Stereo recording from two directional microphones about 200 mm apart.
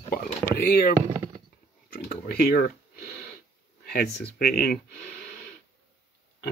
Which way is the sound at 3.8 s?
50° left (ahead or behind).